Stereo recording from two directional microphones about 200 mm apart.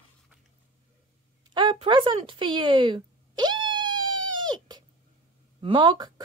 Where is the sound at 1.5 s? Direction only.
25° right (ahead or behind).